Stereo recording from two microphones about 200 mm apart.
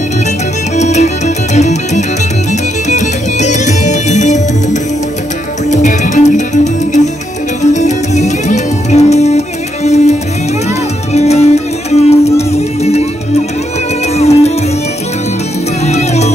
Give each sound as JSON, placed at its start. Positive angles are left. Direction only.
{"t": 0.7, "sound": "music", "side_deg": 35}
{"t": 5.7, "sound": "music", "side_deg": 35}
{"t": 11.1, "sound": "music", "side_deg": 30}
{"t": 14.1, "sound": "music", "side_deg": 30}
{"t": 15.8, "sound": "music", "side_deg": 35}